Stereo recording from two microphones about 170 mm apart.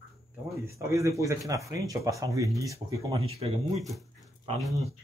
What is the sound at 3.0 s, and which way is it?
Speech, 35° right (ahead or behind).